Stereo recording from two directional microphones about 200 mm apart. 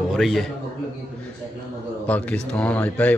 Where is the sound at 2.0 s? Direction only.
5° left (ahead or behind).